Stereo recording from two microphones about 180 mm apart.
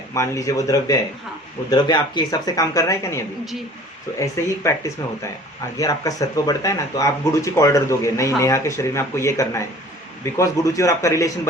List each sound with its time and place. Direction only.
0.1 s speech: 20° left (ahead or behind)